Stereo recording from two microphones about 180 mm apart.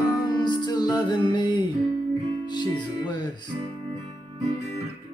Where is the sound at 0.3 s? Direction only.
25° left (ahead or behind).